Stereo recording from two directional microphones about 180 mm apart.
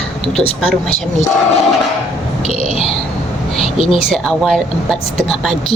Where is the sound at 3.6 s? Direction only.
30° left (ahead or behind).